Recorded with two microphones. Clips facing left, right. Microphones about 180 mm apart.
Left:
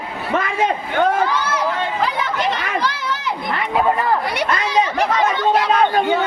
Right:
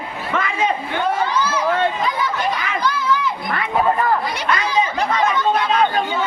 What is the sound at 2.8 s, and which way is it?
Crowd, 70° left (ahead or behind).